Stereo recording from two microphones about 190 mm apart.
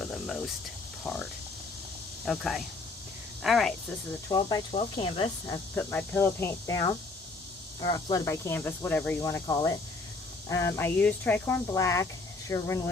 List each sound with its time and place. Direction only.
0.0 s a sound: centre (ahead or behind)
1.0 s speech: 5° left (ahead or behind)
4.3 s speech: 20° left (ahead or behind)
5.7 s speech: 10° left (ahead or behind)